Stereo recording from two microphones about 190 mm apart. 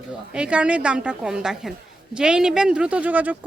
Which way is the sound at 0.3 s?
5° right (ahead or behind).